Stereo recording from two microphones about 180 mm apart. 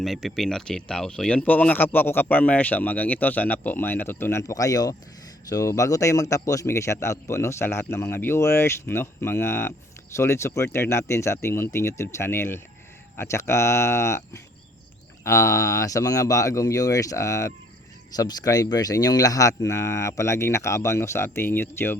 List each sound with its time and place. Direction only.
0.0 s speech: centre (ahead or behind)